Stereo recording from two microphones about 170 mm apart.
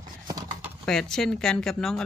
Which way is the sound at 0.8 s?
5° left (ahead or behind).